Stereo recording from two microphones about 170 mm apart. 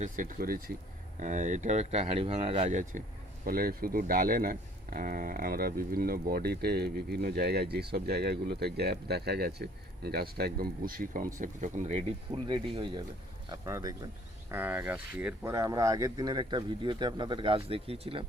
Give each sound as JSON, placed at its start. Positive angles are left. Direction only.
{"t": 0.0, "sound": "speech", "side_deg": -55}
{"t": 1.2, "sound": "speech", "side_deg": -45}
{"t": 3.4, "sound": "speech", "side_deg": -60}